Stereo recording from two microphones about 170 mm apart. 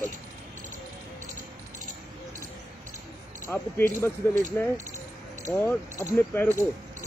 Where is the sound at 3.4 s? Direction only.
15° left (ahead or behind).